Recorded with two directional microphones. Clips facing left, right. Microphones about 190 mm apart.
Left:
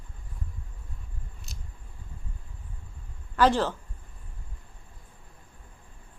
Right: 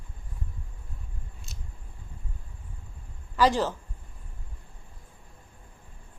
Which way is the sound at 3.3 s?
10° right (ahead or behind).